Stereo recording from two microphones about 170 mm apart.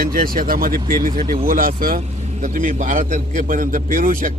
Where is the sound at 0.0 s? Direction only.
55° right (ahead or behind).